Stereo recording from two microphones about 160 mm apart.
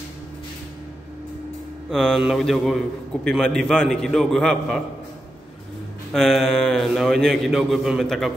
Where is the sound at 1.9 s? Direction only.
Centre (ahead or behind).